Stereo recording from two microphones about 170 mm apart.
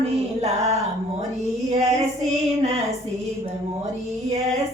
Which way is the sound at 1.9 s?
40° right (ahead or behind).